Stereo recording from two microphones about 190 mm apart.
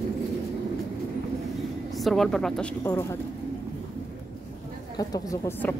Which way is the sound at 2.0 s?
Centre (ahead or behind).